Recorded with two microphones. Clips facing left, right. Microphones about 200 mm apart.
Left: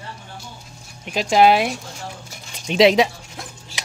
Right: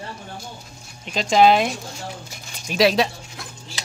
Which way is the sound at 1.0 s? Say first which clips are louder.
Left 1 dB; 10° left (ahead or behind).